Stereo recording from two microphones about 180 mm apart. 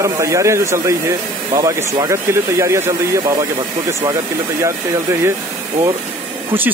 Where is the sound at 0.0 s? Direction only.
15° right (ahead or behind).